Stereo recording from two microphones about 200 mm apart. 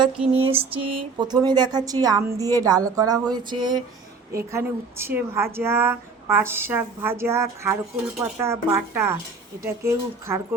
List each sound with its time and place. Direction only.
0.3 s speech: 30° right (ahead or behind); by 10.4 s 15° right (ahead or behind)